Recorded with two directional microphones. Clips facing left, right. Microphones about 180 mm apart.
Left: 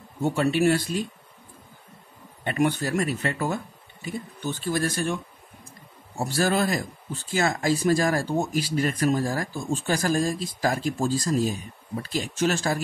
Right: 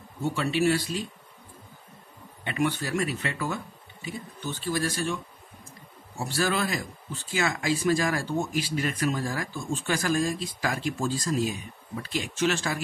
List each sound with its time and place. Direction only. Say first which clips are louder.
0.2 s speech: left 4 dB; 45° left (ahead or behind)
2.4 s speech: left 4 dB; 45° left (ahead or behind)